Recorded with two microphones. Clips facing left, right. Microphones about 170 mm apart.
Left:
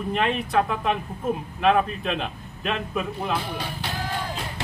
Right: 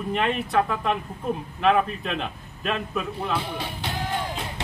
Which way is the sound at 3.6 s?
20° right (ahead or behind).